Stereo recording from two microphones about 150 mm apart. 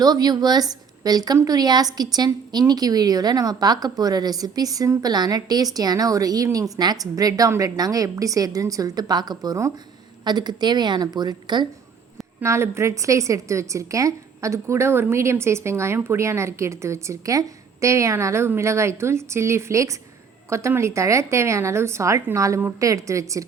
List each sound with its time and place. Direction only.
0.0 s a woman's voice: 25° right (ahead or behind)
12.4 s a woman's voice: 20° right (ahead or behind)